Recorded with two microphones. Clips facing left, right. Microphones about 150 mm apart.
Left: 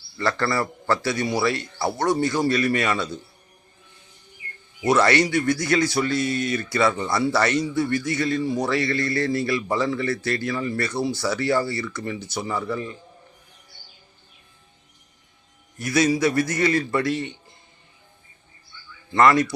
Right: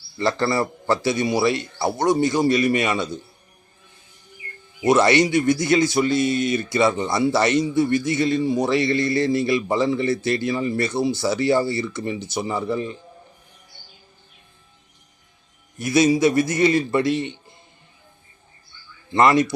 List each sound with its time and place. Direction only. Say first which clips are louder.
0.2 s a man's voice: right 3 dB; 20° right (ahead or behind)
4.8 s a man's voice: right 3 dB; 20° right (ahead or behind)
15.8 s a man's voice: right 3 dB; 20° right (ahead or behind)
19.1 s a man's voice: right 1 dB; 20° right (ahead or behind)